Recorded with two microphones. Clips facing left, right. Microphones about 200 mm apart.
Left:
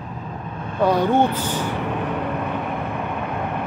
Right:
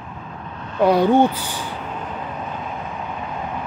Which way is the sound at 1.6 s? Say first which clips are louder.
Left 6 dB; 65° left (ahead or behind).